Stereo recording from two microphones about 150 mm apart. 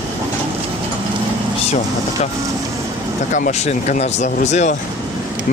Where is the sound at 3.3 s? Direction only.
60° left (ahead or behind).